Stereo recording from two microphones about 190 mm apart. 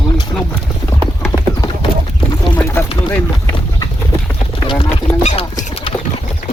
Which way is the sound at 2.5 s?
10° left (ahead or behind).